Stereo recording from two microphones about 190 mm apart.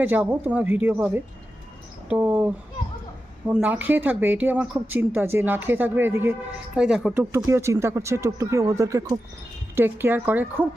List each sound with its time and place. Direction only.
0.0 s speech: 10° right (ahead or behind)